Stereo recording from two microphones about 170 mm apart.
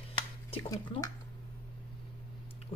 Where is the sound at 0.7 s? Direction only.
20° left (ahead or behind).